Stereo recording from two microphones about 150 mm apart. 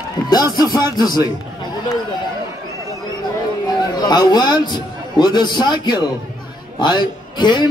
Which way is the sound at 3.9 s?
30° left (ahead or behind).